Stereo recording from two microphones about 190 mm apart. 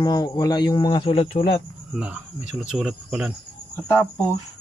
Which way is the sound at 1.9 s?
5° right (ahead or behind).